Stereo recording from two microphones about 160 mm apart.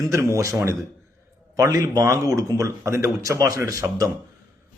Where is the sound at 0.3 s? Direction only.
20° right (ahead or behind).